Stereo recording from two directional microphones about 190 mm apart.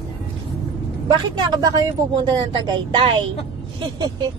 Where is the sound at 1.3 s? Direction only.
20° right (ahead or behind).